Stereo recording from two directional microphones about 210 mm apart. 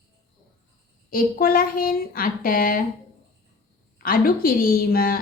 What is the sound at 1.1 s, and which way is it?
A woman's voice, 45° left (ahead or behind).